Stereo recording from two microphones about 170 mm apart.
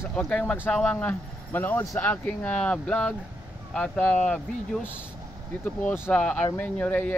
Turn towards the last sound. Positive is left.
turn(degrees=10)  # may be behind; listen again after turning